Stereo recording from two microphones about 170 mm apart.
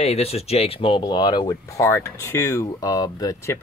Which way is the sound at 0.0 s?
35° left (ahead or behind).